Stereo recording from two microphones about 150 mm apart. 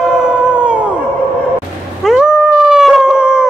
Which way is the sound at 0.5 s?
5° right (ahead or behind).